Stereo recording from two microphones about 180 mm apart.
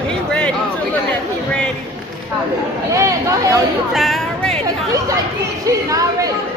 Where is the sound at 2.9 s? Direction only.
15° right (ahead or behind).